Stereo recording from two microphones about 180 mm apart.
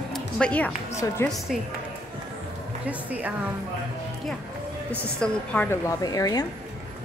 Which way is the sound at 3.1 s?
10° right (ahead or behind).